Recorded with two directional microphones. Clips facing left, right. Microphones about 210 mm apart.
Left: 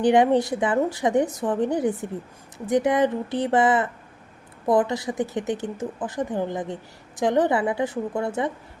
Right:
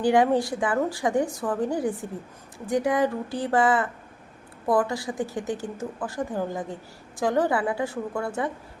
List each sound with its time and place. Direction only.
0.0 s speech: 20° left (ahead or behind)